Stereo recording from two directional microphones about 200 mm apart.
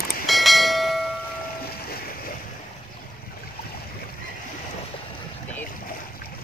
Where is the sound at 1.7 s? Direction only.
50° left (ahead or behind).